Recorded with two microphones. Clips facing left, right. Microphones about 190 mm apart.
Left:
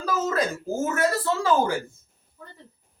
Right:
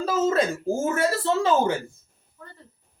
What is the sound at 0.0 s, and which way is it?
Speech, 25° right (ahead or behind).